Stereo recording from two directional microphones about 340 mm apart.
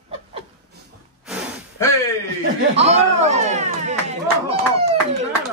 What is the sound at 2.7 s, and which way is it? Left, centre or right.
A man's voice, centre.